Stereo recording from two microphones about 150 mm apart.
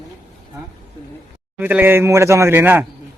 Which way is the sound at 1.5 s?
10° right (ahead or behind).